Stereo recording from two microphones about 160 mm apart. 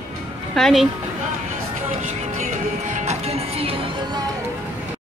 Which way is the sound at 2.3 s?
45° right (ahead or behind).